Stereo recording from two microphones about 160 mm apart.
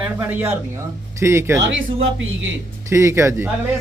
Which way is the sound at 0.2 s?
15° right (ahead or behind).